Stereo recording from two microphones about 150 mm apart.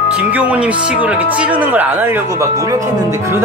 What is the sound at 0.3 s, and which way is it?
Speech, 10° right (ahead or behind).